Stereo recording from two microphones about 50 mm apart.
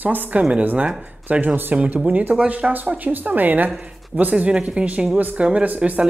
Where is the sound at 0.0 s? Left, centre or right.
Right.